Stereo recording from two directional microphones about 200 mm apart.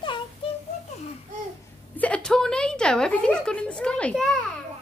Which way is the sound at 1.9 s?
5° left (ahead or behind).